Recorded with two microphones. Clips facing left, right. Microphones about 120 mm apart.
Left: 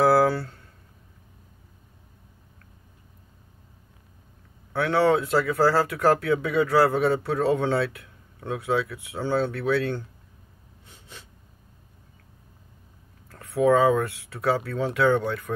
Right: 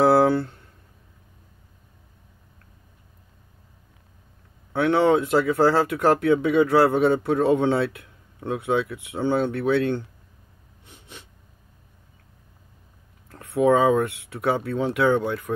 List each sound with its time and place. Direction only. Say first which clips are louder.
0.0 s a sound: right 2 dB; 20° right (ahead or behind)
4.7 s speech: right 2 dB; 20° right (ahead or behind)
10.9 s snort: right 2 dB; 20° right (ahead or behind)
13.3 s speech: right 1 dB; 20° right (ahead or behind)